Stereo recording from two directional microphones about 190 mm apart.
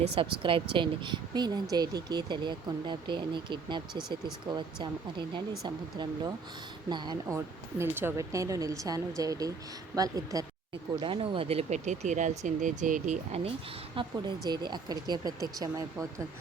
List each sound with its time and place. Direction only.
0.0 s speech: 30° right (ahead or behind)
14.4 s speech: 20° right (ahead or behind)